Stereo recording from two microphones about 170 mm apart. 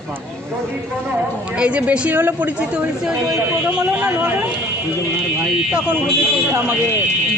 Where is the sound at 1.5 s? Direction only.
5° right (ahead or behind).